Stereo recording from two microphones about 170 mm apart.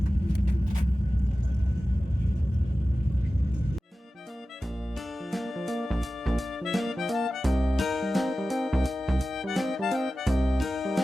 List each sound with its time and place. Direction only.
5.3 s music: centre (ahead or behind)